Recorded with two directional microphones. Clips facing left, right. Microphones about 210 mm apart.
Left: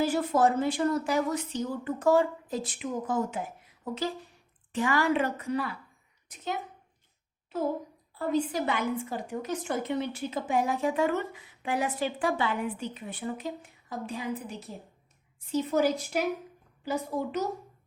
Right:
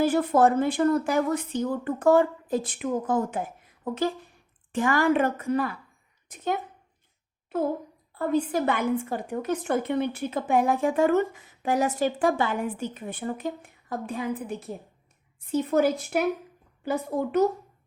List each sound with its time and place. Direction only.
0.0 s a woman's voice: 55° right (ahead or behind)
8.2 s a woman's voice: 55° right (ahead or behind)